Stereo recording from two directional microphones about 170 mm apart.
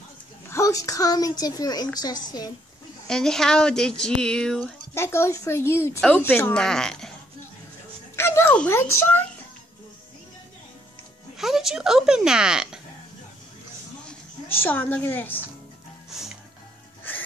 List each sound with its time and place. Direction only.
0.5 s a woman's voice: 20° left (ahead or behind)
3.1 s speech: 5° left (ahead or behind)
4.9 s a woman's voice: 15° left (ahead or behind)
8.2 s a child's voice: 15° left (ahead or behind)
11.3 s speech: centre (ahead or behind)
14.5 s a woman's voice: 10° left (ahead or behind)